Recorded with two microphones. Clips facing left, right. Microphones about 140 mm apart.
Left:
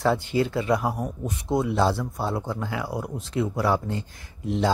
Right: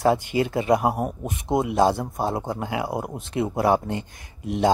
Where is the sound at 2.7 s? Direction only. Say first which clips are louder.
Right 3 dB; 20° right (ahead or behind).